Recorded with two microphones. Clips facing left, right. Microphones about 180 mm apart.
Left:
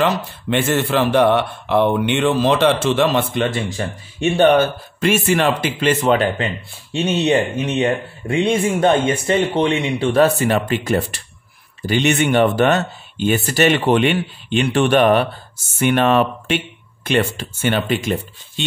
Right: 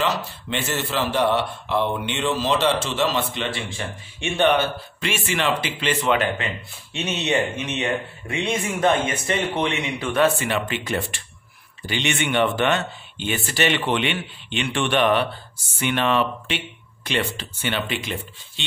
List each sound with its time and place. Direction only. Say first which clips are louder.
0.0 s speech: left 6 dB; 55° left (ahead or behind)